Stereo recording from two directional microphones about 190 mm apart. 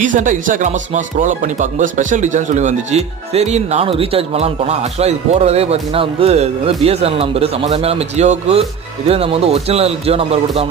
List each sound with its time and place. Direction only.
0.0 s speech: 40° right (ahead or behind)